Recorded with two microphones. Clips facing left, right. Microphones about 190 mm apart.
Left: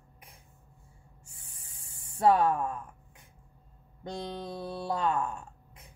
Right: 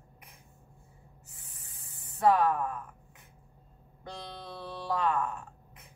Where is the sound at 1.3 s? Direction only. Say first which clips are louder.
Right 1 dB; 30° left (ahead or behind).